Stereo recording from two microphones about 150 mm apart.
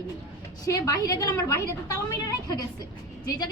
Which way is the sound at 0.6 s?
25° left (ahead or behind).